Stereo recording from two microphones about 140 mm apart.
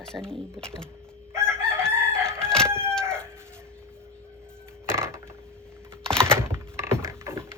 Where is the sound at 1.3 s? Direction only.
20° right (ahead or behind).